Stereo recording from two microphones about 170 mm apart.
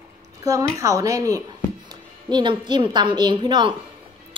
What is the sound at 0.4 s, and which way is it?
A woman's voice, 20° right (ahead or behind).